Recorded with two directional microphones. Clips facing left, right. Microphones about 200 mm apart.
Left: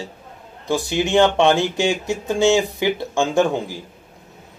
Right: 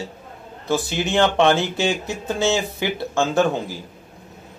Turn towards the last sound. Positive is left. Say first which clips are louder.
# left 1 dB
turn(degrees=15)  # may be behind; listen again after turning